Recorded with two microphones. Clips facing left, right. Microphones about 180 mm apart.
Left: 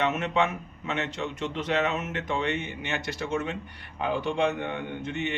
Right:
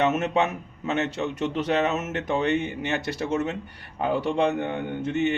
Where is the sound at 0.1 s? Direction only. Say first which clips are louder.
Right 3 dB; 40° right (ahead or behind).